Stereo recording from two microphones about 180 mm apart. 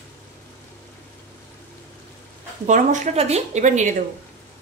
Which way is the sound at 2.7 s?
45° right (ahead or behind).